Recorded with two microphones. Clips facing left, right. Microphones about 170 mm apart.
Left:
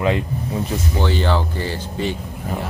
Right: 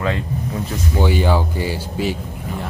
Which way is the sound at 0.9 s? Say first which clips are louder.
Right 3 dB; 10° right (ahead or behind).